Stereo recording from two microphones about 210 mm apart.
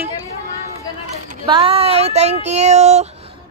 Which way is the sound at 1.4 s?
25° right (ahead or behind).